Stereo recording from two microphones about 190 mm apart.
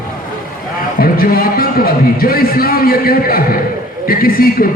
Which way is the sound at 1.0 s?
50° left (ahead or behind).